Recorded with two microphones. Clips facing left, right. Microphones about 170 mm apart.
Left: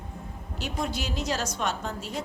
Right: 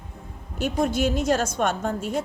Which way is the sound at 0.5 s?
50° right (ahead or behind).